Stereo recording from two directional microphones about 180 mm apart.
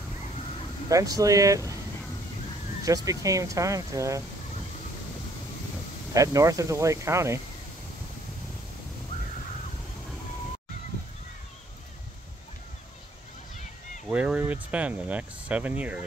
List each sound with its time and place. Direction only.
0.8 s speech: 20° right (ahead or behind)
2.8 s speech: 20° right (ahead or behind)
6.1 s speech: 20° right (ahead or behind)
14.0 s speech: 5° right (ahead or behind)